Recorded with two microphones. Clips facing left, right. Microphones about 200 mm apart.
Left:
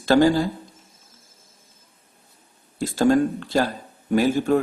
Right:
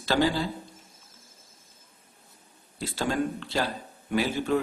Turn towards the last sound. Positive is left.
turn(degrees=45)  # may be behind; listen again after turning